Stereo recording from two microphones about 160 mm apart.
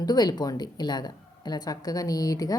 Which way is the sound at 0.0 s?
25° left (ahead or behind).